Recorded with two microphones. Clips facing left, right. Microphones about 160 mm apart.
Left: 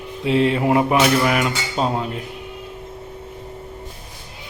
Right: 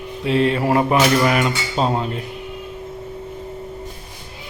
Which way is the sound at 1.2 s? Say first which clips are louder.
Right 1 dB; 5° left (ahead or behind).